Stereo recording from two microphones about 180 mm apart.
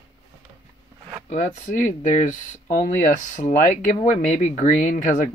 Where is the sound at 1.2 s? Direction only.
45° left (ahead or behind).